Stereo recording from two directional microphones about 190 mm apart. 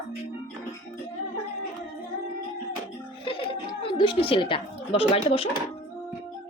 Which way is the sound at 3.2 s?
25° left (ahead or behind).